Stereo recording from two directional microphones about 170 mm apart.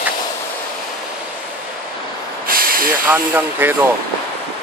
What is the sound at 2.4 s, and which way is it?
Snort, 60° right (ahead or behind).